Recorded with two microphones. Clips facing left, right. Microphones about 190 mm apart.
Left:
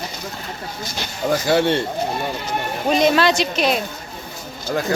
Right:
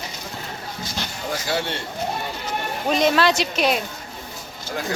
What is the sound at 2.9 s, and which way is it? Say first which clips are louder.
Speech: left 2 dB; centre (ahead or behind).